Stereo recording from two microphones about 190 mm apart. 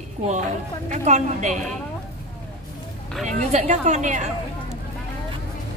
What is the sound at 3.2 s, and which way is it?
Speech, 35° right (ahead or behind).